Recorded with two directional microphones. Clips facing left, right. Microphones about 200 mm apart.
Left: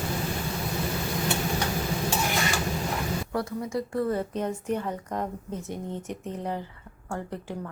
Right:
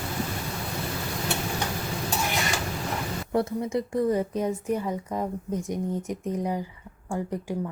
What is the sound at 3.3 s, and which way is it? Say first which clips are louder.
Speech: right 6 dB; 25° right (ahead or behind).